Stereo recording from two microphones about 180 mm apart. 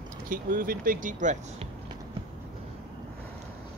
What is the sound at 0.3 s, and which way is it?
Speech, 50° right (ahead or behind).